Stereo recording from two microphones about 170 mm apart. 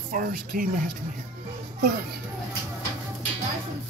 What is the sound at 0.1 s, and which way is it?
Speech, 50° right (ahead or behind).